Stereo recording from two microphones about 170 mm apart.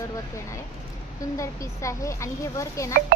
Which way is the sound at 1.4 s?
20° left (ahead or behind).